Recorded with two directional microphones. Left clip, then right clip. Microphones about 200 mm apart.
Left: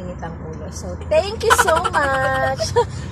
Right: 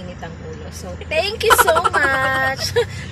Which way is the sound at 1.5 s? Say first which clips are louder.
Right 2 dB; centre (ahead or behind).